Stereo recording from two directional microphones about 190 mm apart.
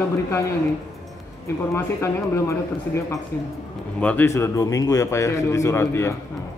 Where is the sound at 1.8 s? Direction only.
15° left (ahead or behind).